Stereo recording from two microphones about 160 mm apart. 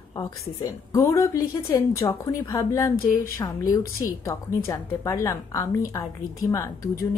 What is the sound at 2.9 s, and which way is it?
Speech, 65° left (ahead or behind).